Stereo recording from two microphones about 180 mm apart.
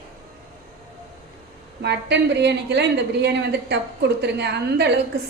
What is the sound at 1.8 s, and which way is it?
A woman's voice, 70° right (ahead or behind).